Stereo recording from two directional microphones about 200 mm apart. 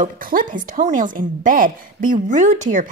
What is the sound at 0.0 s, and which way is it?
A woman's voice, 45° right (ahead or behind).